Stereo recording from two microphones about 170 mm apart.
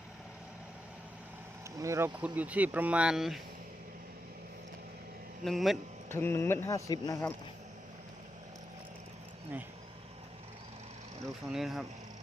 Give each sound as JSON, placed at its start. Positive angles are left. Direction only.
{"t": 1.8, "sound": "speech", "side_deg": -20}
{"t": 5.5, "sound": "speech", "side_deg": 0}
{"t": 6.1, "sound": "speech", "side_deg": 15}
{"t": 11.5, "sound": "speech", "side_deg": 0}